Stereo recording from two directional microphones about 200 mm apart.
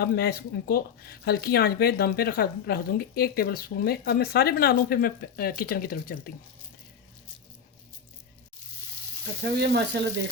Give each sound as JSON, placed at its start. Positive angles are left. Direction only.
{"t": 0.0, "sound": "speech", "side_deg": 50}
{"t": 9.4, "sound": "speech", "side_deg": -55}